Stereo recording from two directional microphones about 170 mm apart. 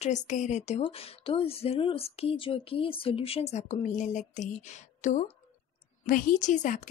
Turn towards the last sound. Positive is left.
turn(degrees=45)  # may be behind; listen again after turning